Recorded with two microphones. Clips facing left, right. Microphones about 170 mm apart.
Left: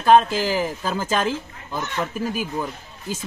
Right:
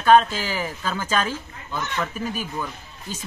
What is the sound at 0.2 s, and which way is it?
Speech, 10° left (ahead or behind).